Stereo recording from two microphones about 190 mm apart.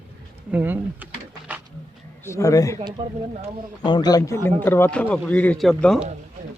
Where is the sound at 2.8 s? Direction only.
35° right (ahead or behind).